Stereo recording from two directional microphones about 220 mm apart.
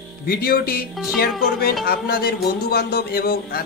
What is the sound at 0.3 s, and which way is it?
Speech, 40° left (ahead or behind).